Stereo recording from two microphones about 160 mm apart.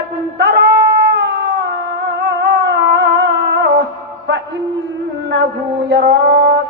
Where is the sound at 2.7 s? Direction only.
90° right.